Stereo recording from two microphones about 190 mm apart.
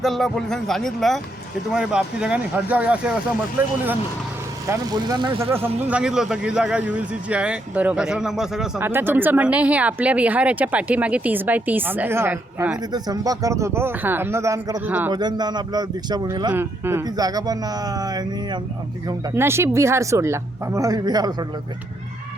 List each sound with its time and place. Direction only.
0.0 s speech: centre (ahead or behind)
4.6 s speech: 20° right (ahead or behind)
5.5 s speech: 10° right (ahead or behind)
12.9 s speech: 20° right (ahead or behind)
15.1 s speech: 20° right (ahead or behind)